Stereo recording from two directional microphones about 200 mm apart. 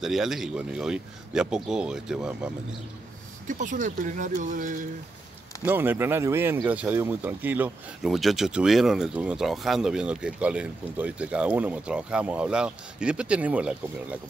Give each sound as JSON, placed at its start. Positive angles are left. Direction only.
{"t": 0.0, "sound": "speech", "side_deg": 0}
{"t": 3.4, "sound": "speech", "side_deg": -40}
{"t": 5.7, "sound": "speech", "side_deg": -10}